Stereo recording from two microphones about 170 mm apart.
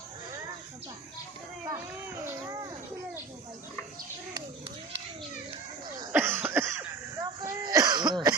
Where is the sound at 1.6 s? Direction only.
15° right (ahead or behind).